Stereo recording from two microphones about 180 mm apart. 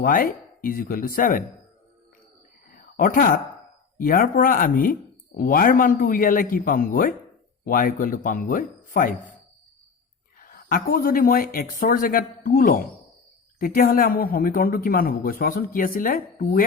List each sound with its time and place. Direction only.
0.0 s speech: 50° left (ahead or behind)
2.6 s a sound: 50° left (ahead or behind)
3.9 s speech: 50° left (ahead or behind)
10.4 s speech: 55° left (ahead or behind)